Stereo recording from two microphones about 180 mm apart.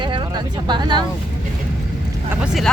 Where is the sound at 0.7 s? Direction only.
25° right (ahead or behind).